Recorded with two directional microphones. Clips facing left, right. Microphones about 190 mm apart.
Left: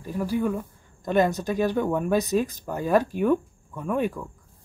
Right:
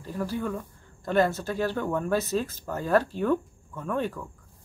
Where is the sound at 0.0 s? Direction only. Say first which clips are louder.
Left 5 dB; 10° left (ahead or behind).